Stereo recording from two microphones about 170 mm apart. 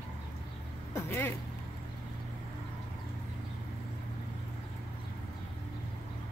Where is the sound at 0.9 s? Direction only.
15° left (ahead or behind).